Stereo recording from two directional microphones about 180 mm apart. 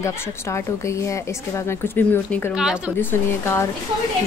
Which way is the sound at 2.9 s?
15° left (ahead or behind).